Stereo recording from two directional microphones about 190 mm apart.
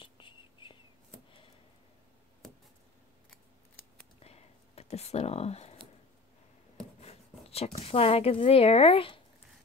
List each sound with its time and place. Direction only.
0.0 s whispering: 25° left (ahead or behind)
4.2 s a sound: 35° left (ahead or behind)
7.0 s speech: 35° left (ahead or behind)